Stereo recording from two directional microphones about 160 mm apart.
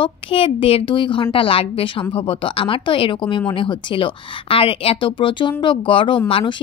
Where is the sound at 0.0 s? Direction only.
35° left (ahead or behind).